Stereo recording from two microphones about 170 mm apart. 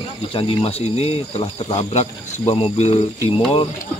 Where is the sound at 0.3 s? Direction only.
30° left (ahead or behind).